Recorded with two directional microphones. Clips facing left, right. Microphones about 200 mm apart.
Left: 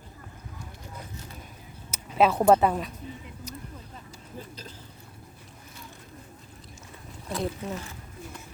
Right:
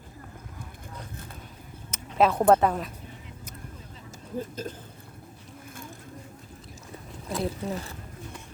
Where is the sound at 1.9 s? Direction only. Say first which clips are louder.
Even; 5° left (ahead or behind).